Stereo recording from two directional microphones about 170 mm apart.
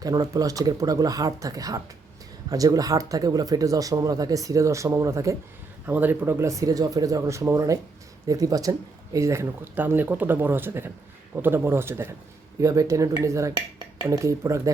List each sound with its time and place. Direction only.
0.0 s speech: 20° right (ahead or behind)